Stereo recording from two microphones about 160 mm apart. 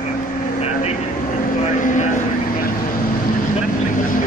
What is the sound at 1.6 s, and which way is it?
Speech, 50° left (ahead or behind).